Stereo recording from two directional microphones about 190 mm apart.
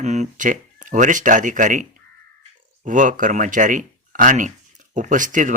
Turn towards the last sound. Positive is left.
turn(degrees=-40)  # may be behind; listen again after turning